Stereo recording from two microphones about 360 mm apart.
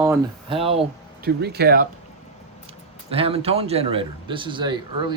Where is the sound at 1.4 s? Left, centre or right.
Right.